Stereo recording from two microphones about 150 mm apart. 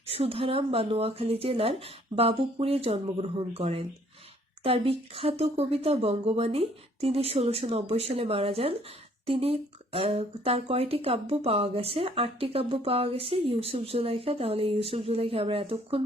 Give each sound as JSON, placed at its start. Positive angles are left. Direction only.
{"t": 0.1, "sound": "speech", "side_deg": -40}